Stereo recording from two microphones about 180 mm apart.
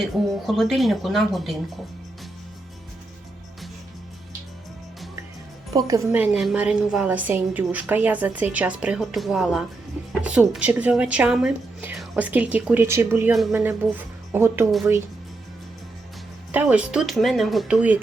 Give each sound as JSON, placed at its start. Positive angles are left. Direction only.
{"t": 0.0, "sound": "speech", "side_deg": 0}
{"t": 5.7, "sound": "a woman's voice", "side_deg": -20}
{"t": 6.1, "sound": "a woman's voice", "side_deg": -5}
{"t": 16.5, "sound": "speech", "side_deg": -10}